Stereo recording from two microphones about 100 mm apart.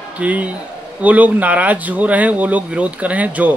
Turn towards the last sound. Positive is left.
turn(degrees=-15)  # may be behind; listen again after turning